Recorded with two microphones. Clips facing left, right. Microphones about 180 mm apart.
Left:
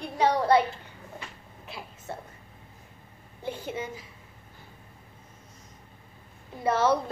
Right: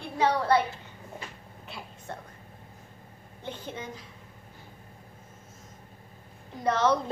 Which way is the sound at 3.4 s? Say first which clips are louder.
Left 4 dB; 10° left (ahead or behind).